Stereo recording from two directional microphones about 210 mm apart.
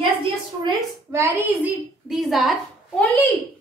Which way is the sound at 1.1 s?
10° right (ahead or behind).